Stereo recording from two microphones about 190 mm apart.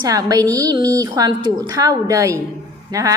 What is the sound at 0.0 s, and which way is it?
A woman's voice, 20° right (ahead or behind).